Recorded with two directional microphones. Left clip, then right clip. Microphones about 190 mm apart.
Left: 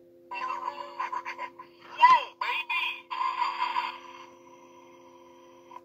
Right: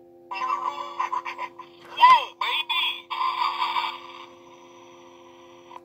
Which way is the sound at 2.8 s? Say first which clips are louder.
Right 5 dB; 30° right (ahead or behind).